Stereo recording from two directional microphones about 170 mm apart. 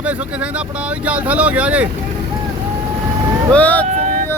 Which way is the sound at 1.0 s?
10° right (ahead or behind).